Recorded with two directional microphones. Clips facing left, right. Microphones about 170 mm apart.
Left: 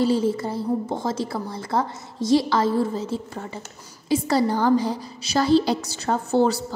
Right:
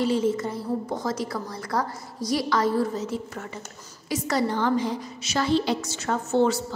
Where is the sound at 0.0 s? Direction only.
35° left (ahead or behind).